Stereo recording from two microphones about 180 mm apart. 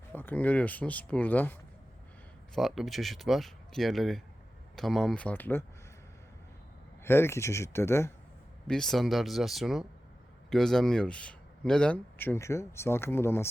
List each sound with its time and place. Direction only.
0.1 s speech: 10° left (ahead or behind)
2.6 s speech: centre (ahead or behind)
7.0 s speech: 15° left (ahead or behind)
8.6 s speech: 5° left (ahead or behind)